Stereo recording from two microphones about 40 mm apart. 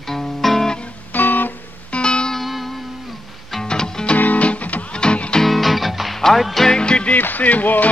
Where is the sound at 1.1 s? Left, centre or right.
Left.